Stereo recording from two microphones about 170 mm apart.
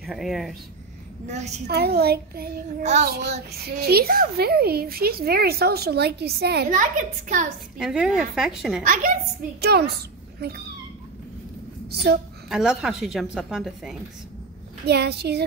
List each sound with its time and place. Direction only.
0.0 s a woman's voice: centre (ahead or behind)
1.2 s a child's voice: 40° right (ahead or behind)
1.7 s a child's voice: 70° right (ahead or behind)
6.8 s a child's voice: 50° right (ahead or behind)
7.8 s a woman's voice: 5° right (ahead or behind)
8.8 s a child's voice: 55° right (ahead or behind)
9.6 s a child's voice: 70° right (ahead or behind)
11.9 s a woman's voice: 70° right (ahead or behind)
12.4 s a woman's voice: 5° right (ahead or behind)
14.9 s a child's voice: 75° right (ahead or behind)